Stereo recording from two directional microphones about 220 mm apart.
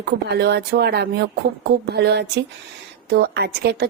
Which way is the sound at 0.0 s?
50° right (ahead or behind).